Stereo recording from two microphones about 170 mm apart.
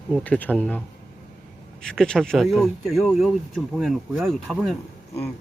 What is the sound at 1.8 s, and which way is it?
Speech, 5° left (ahead or behind).